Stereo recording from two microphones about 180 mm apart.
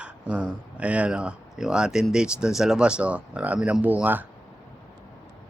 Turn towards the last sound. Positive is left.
turn(degrees=-10)  # may be behind; listen again after turning